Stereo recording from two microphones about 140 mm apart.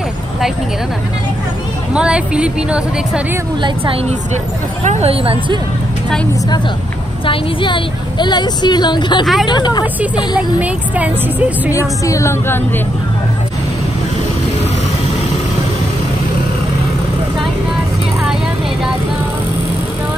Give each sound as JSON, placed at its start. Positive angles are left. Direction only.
{"t": 2.0, "sound": "a woman's voice", "side_deg": -5}
{"t": 4.8, "sound": "speech", "side_deg": -45}
{"t": 7.2, "sound": "a woman's voice", "side_deg": 35}
{"t": 9.2, "sound": "speech", "side_deg": 0}
{"t": 9.5, "sound": "a woman's voice", "side_deg": 30}
{"t": 10.6, "sound": "a woman's voice", "side_deg": -10}
{"t": 11.7, "sound": "a woman's voice", "side_deg": 20}